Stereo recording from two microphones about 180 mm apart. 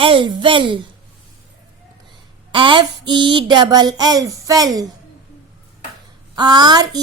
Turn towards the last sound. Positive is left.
turn(degrees=-20)  # may be behind; listen again after turning